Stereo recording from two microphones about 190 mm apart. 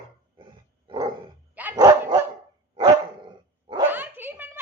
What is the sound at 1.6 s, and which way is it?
Dog, 15° right (ahead or behind).